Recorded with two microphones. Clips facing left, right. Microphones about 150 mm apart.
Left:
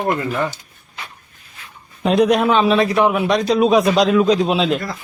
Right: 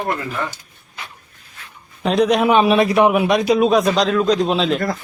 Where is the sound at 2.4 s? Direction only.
15° right (ahead or behind).